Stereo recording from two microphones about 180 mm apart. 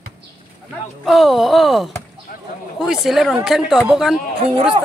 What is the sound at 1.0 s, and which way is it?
A man's voice, centre (ahead or behind).